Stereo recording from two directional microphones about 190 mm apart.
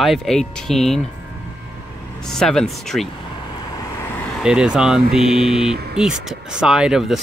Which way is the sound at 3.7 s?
15° left (ahead or behind).